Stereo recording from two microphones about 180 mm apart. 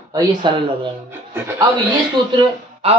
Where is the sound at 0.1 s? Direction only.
25° right (ahead or behind).